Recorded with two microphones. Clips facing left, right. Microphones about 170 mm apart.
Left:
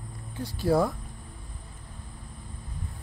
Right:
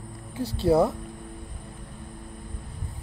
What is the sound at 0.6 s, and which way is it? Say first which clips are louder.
Speech: right 3 dB; 25° right (ahead or behind).